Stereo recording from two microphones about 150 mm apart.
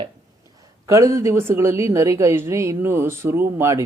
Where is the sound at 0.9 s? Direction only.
20° right (ahead or behind).